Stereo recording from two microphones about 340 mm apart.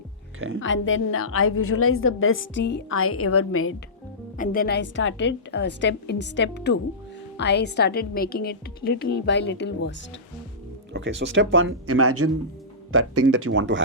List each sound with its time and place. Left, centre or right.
0.3 s speech: right
0.6 s a woman's voice: left
4.4 s a woman's voice: left
10.9 s speech: right